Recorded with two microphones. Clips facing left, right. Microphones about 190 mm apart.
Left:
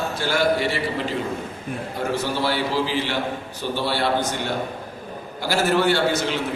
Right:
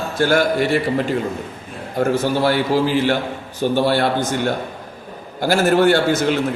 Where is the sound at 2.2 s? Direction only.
50° right (ahead or behind).